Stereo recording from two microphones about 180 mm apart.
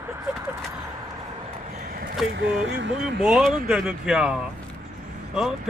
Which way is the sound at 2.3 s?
75° right (ahead or behind).